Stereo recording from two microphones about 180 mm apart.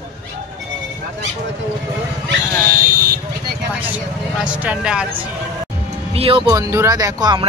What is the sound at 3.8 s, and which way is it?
Speech, 10° right (ahead or behind).